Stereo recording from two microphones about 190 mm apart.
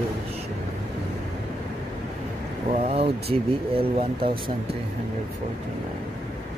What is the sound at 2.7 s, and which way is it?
Speech, 30° right (ahead or behind).